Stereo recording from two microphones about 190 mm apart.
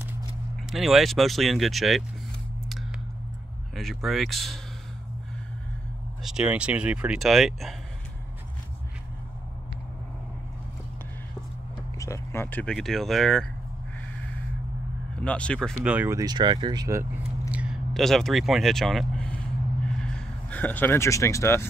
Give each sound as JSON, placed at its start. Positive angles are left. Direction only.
{"t": 0.7, "sound": "speech", "side_deg": 0}
{"t": 3.7, "sound": "speech", "side_deg": 0}
{"t": 6.2, "sound": "speech", "side_deg": -5}
{"t": 12.0, "sound": "speech", "side_deg": 15}
{"t": 15.1, "sound": "speech", "side_deg": 5}
{"t": 15.8, "sound": "speech", "side_deg": -10}
{"t": 17.5, "sound": "vehicle", "side_deg": -5}
{"t": 20.1, "sound": "speech", "side_deg": 5}